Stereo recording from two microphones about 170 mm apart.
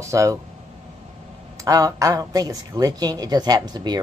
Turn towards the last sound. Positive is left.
turn(degrees=-25)  # may be behind; listen again after turning